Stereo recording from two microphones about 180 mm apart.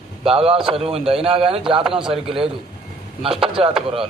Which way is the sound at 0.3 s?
30° right (ahead or behind).